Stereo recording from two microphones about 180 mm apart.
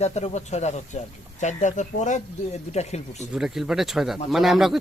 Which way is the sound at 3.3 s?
5° right (ahead or behind).